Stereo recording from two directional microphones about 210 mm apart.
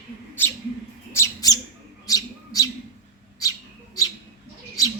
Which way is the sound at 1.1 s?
15° left (ahead or behind).